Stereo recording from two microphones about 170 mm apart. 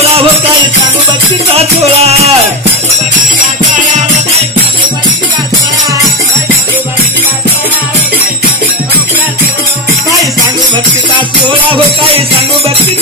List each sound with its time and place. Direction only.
1.6 s music: 40° right (ahead or behind)